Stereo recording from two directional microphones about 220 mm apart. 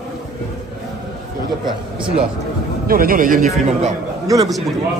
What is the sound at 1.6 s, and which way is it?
Speech, 20° right (ahead or behind).